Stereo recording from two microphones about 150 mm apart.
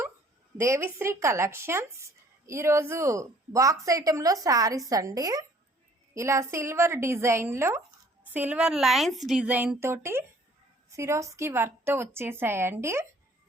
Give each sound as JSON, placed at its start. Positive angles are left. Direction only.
{"t": 0.5, "sound": "a woman's voice", "side_deg": -15}